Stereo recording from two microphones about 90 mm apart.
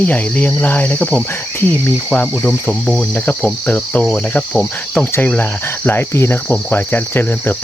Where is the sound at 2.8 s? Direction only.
5° left (ahead or behind).